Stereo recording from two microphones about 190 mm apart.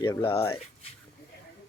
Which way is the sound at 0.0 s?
25° left (ahead or behind).